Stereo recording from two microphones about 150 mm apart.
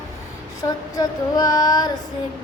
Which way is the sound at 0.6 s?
25° left (ahead or behind).